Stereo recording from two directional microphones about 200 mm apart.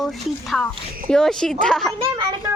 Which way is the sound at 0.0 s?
Centre (ahead or behind).